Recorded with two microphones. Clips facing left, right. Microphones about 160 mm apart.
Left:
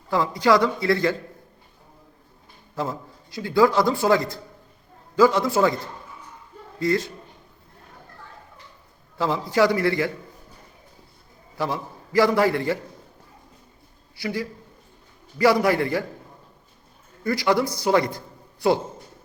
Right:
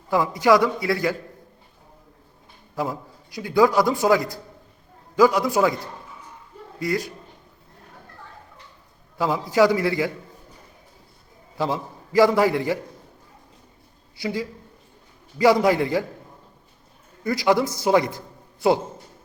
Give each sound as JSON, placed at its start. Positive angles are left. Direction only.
{"t": 0.1, "sound": "a man's voice", "side_deg": -15}
{"t": 3.2, "sound": "a man's voice", "side_deg": -15}
{"t": 6.7, "sound": "a man's voice", "side_deg": -15}
{"t": 9.1, "sound": "a man's voice", "side_deg": -15}
{"t": 11.5, "sound": "a man's voice", "side_deg": -20}
{"t": 14.2, "sound": "a man's voice", "side_deg": -20}
{"t": 17.2, "sound": "speech", "side_deg": -20}